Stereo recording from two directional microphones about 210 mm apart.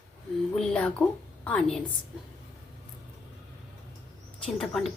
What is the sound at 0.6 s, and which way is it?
A woman's voice, 5° left (ahead or behind).